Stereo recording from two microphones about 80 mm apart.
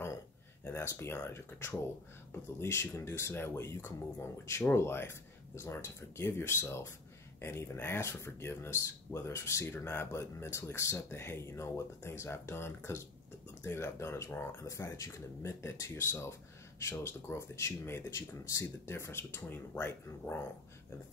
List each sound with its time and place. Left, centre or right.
0.8 s speech: left